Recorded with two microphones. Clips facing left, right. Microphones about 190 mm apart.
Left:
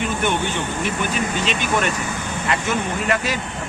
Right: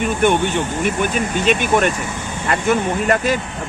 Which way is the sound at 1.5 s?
55° right (ahead or behind).